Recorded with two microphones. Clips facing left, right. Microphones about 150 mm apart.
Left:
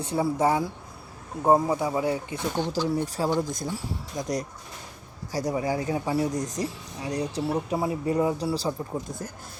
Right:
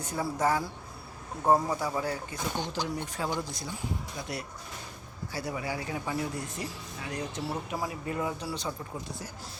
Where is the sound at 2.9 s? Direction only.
35° left (ahead or behind).